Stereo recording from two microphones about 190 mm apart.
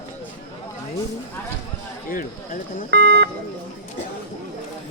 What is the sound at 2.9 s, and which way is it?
Speech, 60° right (ahead or behind).